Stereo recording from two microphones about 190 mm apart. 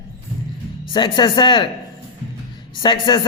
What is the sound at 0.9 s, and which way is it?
Speech, 25° left (ahead or behind).